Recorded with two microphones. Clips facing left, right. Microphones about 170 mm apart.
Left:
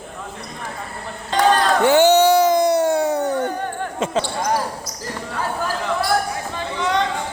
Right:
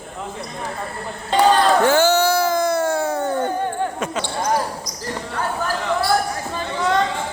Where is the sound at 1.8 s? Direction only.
20° left (ahead or behind).